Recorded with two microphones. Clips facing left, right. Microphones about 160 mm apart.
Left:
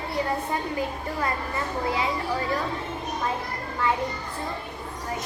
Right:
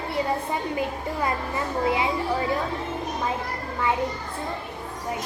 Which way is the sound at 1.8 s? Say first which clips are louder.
Right 4 dB; 20° right (ahead or behind).